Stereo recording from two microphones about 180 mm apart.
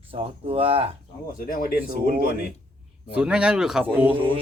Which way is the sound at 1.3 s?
50° left (ahead or behind).